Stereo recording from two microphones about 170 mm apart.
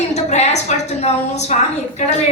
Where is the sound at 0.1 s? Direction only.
40° left (ahead or behind).